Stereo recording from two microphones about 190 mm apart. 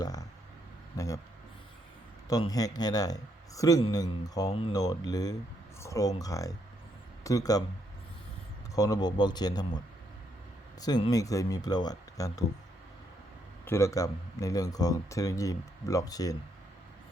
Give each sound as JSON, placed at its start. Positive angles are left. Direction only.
{"t": 0.0, "sound": "vehicle", "side_deg": 20}
{"t": 0.9, "sound": "speech", "side_deg": 15}
{"t": 2.3, "sound": "speech", "side_deg": 20}
{"t": 8.7, "sound": "speech", "side_deg": 15}
{"t": 13.7, "sound": "speech", "side_deg": 15}